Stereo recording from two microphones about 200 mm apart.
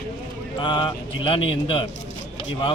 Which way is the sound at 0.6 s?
25° left (ahead or behind).